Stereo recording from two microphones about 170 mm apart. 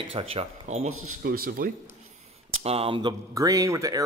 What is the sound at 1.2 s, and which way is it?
Speech, 60° right (ahead or behind).